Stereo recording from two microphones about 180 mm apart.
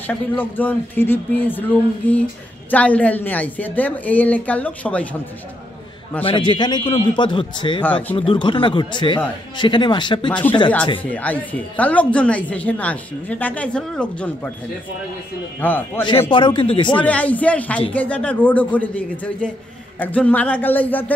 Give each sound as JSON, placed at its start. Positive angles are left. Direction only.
{"t": 0.0, "sound": "a woman's voice", "side_deg": 10}
{"t": 6.2, "sound": "a man's voice", "side_deg": 25}
{"t": 7.8, "sound": "a woman's voice", "side_deg": 10}
{"t": 8.2, "sound": "a man's voice", "side_deg": 30}
{"t": 11.0, "sound": "a woman's voice", "side_deg": 10}
{"t": 15.6, "sound": "a woman's voice", "side_deg": 10}
{"t": 16.3, "sound": "a man's voice", "side_deg": 30}
{"t": 17.0, "sound": "a woman's voice", "side_deg": 10}